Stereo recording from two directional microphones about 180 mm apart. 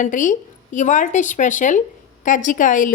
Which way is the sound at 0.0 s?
45° left (ahead or behind).